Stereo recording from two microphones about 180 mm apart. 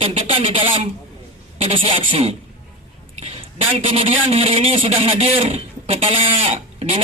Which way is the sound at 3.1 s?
35° right (ahead or behind).